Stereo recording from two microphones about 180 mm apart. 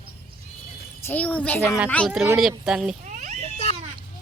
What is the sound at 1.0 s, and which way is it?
Speech, 10° left (ahead or behind).